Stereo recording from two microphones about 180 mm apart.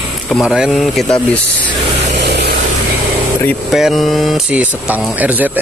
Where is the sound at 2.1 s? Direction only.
70° right (ahead or behind).